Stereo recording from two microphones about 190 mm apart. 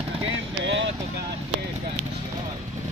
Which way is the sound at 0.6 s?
75° right (ahead or behind).